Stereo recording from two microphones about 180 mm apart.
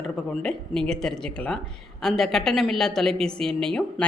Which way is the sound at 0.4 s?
5° left (ahead or behind).